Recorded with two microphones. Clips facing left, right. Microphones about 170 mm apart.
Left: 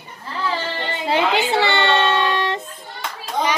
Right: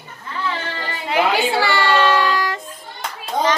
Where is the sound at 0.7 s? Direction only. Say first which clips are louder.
Right 1 dB; 25° left (ahead or behind).